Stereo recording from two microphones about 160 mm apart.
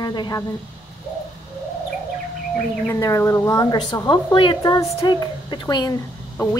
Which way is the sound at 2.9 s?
15° left (ahead or behind).